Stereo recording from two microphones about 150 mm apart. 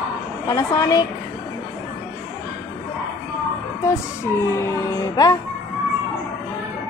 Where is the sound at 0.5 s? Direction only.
25° left (ahead or behind).